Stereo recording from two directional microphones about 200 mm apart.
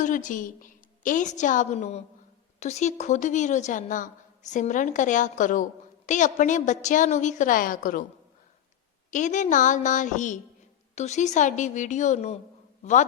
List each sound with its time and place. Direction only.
0.0 s a woman's voice: 40° left (ahead or behind)
9.0 s a woman's voice: 40° left (ahead or behind)